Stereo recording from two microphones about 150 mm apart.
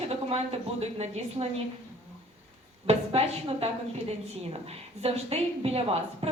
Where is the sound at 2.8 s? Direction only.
40° right (ahead or behind).